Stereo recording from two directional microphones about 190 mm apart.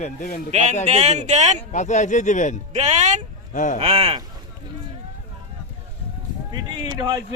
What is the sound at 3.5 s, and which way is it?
Speech, 40° left (ahead or behind).